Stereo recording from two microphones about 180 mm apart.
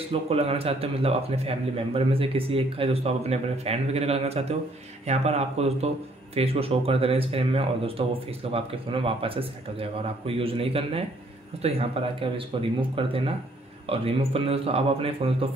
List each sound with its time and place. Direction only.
0.1 s speech: 35° right (ahead or behind)